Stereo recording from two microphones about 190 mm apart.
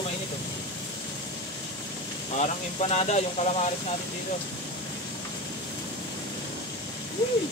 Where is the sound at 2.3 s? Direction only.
35° left (ahead or behind).